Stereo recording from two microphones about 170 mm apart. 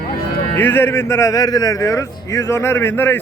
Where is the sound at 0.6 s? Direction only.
10° left (ahead or behind).